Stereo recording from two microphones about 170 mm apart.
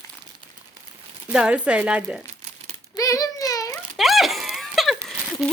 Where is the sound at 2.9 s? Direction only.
20° left (ahead or behind).